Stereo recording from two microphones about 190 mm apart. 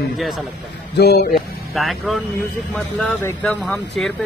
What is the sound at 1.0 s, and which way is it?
Speech, 55° left (ahead or behind).